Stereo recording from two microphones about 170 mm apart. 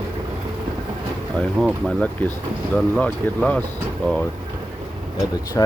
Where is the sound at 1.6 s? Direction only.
5° left (ahead or behind).